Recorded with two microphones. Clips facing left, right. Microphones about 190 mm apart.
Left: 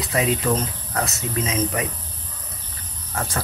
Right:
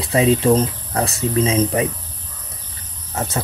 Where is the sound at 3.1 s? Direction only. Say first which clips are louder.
Right 3 dB; 25° right (ahead or behind).